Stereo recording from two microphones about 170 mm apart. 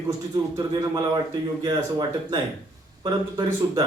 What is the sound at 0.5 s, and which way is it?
A man's voice, 25° right (ahead or behind).